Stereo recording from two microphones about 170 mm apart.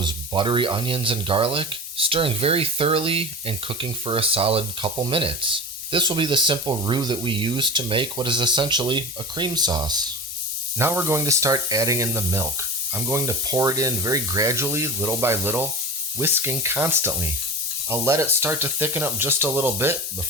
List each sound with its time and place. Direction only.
0.0 s speech: 30° right (ahead or behind)
10.8 s speech: 15° right (ahead or behind)